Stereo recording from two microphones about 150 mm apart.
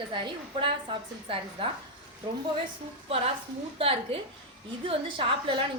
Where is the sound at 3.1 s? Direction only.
40° right (ahead or behind).